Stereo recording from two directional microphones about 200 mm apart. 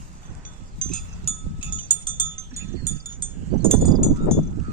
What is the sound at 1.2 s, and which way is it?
Cowbell, 25° left (ahead or behind).